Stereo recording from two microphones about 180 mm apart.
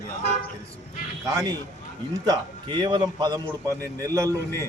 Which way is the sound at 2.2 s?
25° right (ahead or behind).